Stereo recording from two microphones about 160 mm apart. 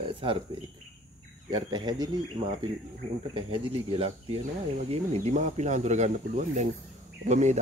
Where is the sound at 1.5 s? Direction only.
25° right (ahead or behind).